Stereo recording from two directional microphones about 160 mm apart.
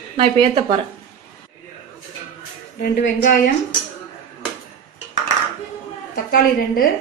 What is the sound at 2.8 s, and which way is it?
Speech, 65° left (ahead or behind).